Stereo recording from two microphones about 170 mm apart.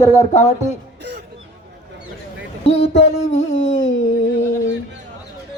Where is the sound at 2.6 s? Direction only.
35° left (ahead or behind).